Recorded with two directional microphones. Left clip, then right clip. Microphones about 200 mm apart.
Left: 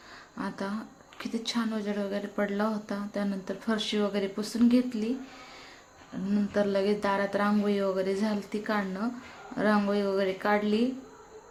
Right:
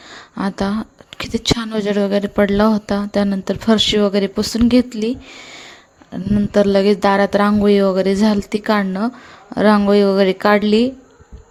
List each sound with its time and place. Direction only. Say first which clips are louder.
0.1 s a woman's voice: right 13 dB; 45° right (ahead or behind)
6.3 s a woman's voice: right 13 dB; 45° right (ahead or behind)